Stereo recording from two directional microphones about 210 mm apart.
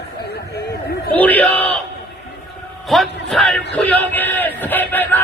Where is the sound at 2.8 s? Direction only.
Centre (ahead or behind).